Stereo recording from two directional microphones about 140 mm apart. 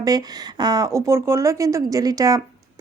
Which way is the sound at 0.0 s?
30° right (ahead or behind).